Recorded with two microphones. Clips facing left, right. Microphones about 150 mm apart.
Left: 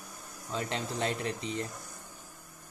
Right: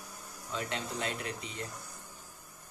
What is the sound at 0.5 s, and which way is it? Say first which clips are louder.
Speech: left 3 dB; 35° left (ahead or behind).